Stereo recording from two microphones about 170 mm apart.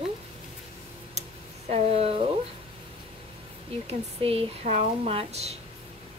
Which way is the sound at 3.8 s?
35° right (ahead or behind).